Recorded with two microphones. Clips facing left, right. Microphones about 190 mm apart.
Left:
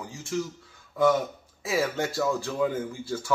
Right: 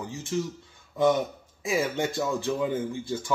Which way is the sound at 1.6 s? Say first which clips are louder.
Even; 15° right (ahead or behind).